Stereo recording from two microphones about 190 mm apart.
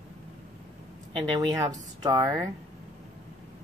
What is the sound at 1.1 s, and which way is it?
Speech, 20° right (ahead or behind).